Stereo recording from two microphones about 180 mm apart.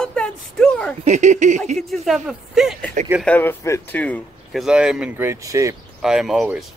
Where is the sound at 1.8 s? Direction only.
Centre (ahead or behind).